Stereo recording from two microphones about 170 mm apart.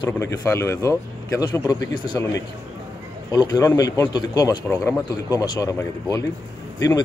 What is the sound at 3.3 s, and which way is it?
Speech, 20° left (ahead or behind).